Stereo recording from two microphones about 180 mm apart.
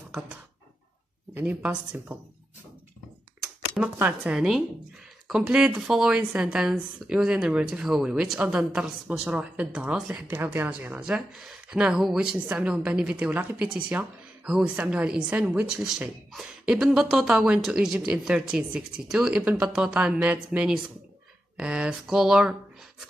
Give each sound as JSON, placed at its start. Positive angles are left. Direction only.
{"t": 1.3, "sound": "speech", "side_deg": -5}
{"t": 3.7, "sound": "a woman's voice", "side_deg": -5}